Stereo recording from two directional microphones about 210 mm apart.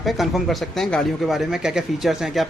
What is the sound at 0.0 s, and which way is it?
Speech, centre (ahead or behind).